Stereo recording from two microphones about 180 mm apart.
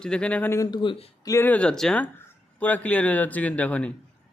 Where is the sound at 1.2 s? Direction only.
15° left (ahead or behind).